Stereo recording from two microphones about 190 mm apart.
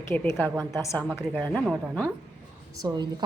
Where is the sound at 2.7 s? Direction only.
20° right (ahead or behind).